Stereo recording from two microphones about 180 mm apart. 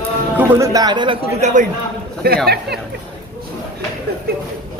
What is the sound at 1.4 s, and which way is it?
Speech, 40° right (ahead or behind).